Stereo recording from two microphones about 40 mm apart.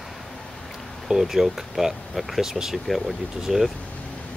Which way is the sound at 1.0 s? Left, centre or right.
Centre.